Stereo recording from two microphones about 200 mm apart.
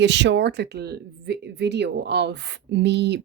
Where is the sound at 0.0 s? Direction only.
60° right (ahead or behind).